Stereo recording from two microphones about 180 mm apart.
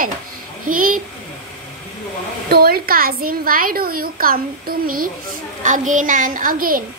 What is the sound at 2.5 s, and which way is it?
A child's voice, 55° right (ahead or behind).